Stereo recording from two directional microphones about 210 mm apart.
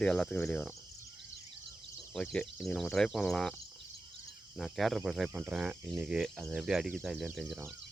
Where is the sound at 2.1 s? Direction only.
5° left (ahead or behind).